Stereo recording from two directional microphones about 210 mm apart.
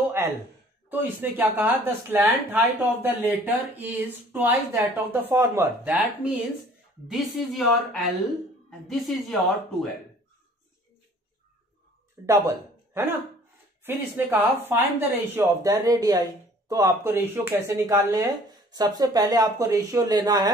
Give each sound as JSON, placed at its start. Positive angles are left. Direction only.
{"t": 0.2, "sound": "a sound", "side_deg": -10}
{"t": 0.8, "sound": "a woman's voice", "side_deg": -10}
{"t": 12.3, "sound": "speech", "side_deg": -15}